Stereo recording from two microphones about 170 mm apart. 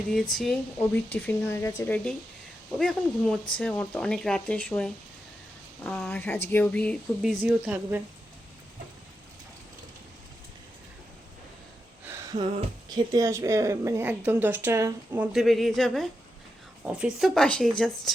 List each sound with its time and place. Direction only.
0.1 s speech: centre (ahead or behind)
13.1 s speech: 20° right (ahead or behind)
15.3 s speech: centre (ahead or behind)